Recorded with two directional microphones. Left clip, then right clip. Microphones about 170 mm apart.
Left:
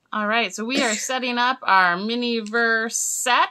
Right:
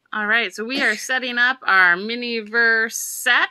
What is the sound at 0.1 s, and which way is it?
Speech, 5° right (ahead or behind).